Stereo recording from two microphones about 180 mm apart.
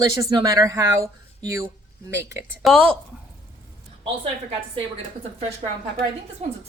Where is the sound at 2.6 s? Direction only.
5° left (ahead or behind).